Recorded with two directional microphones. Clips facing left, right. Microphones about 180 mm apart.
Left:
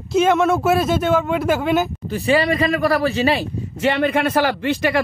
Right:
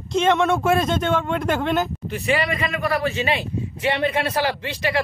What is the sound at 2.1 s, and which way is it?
A man's voice, 35° left (ahead or behind).